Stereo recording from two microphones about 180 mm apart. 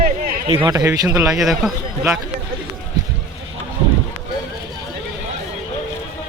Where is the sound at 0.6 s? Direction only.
15° right (ahead or behind).